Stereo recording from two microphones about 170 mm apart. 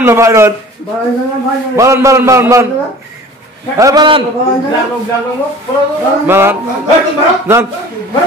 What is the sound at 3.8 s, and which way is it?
Speech, 25° right (ahead or behind).